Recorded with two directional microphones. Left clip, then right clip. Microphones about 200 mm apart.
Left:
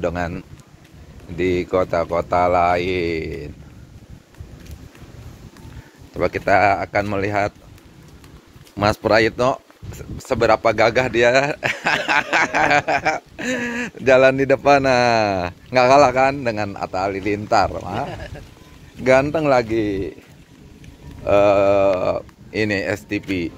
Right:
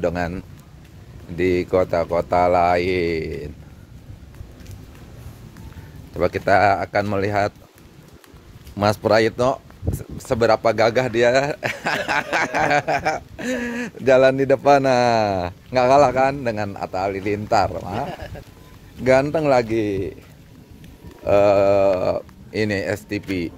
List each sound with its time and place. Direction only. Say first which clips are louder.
0.0 s speech: even; 25° right (ahead or behind)
6.1 s speech: even; 20° right (ahead or behind)
8.7 s speech: left 1 dB; 20° right (ahead or behind)
18.0 s speech: even; 30° right (ahead or behind)
19.0 s speech: left 1 dB; 15° right (ahead or behind)
21.2 s speech: left 1 dB; 20° right (ahead or behind)